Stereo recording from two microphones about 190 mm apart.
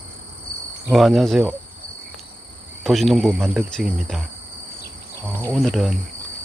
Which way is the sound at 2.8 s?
Centre (ahead or behind).